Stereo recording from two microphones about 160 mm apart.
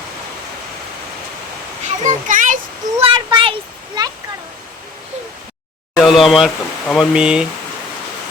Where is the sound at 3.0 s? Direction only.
35° right (ahead or behind).